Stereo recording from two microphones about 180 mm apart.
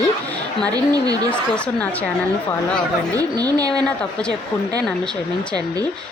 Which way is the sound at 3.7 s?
5° left (ahead or behind).